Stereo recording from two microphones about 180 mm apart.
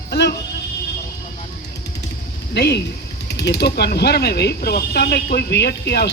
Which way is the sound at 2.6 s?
65° left (ahead or behind).